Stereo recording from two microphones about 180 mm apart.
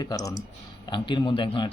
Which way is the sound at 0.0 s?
20° left (ahead or behind).